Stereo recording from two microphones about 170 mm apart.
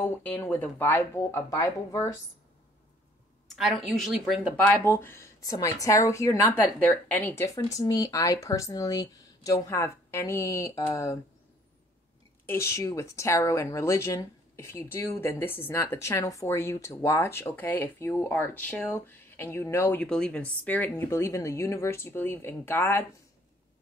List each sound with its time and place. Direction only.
0.0 s speech: 10° left (ahead or behind)
3.4 s a woman's voice: centre (ahead or behind)
4.6 s speech: 10° left (ahead or behind)
12.4 s speech: 15° left (ahead or behind)